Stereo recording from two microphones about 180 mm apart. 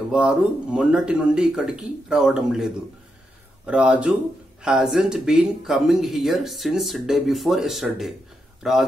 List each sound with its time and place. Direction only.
0.1 s speech: 5° right (ahead or behind)